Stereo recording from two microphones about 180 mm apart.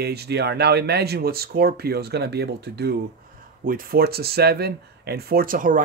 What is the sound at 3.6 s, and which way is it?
Speech, 50° right (ahead or behind).